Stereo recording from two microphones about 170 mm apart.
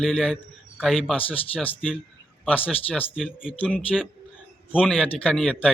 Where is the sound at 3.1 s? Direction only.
5° right (ahead or behind).